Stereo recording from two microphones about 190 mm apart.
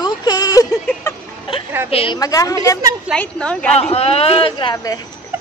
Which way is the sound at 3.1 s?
5° left (ahead or behind).